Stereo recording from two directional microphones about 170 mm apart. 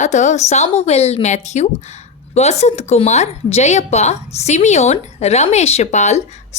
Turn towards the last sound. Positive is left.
turn(degrees=45)  # may be behind; listen again after turning